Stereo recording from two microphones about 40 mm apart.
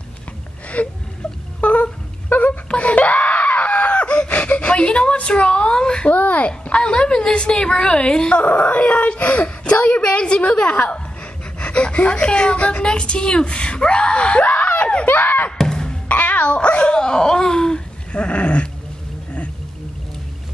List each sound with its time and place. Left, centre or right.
0.8 s speech: left
1.6 s wail: left
2.7 s screaming: left
4.3 s whimper: left
6.0 s a sound: left
8.4 s speech: left
14.4 s screaming: left
15.0 s a sound: left
15.5 s music: centre
16.1 s dog: left